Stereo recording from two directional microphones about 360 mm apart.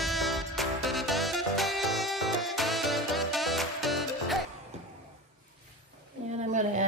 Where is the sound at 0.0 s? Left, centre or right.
Centre.